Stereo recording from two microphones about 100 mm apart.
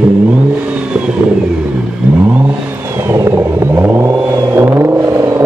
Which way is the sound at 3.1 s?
25° right (ahead or behind).